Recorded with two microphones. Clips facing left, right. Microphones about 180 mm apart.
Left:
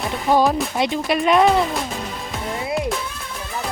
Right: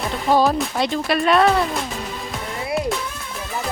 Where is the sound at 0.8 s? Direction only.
15° left (ahead or behind).